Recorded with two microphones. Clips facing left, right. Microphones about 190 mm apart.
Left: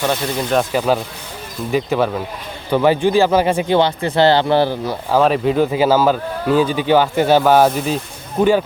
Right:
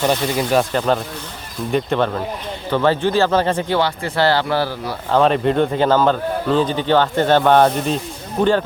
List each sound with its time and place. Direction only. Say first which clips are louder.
0.0 s speech: right 1 dB; 5° right (ahead or behind); by 4.9 s 20° left (ahead or behind)
5.1 s speech: even; 5° left (ahead or behind)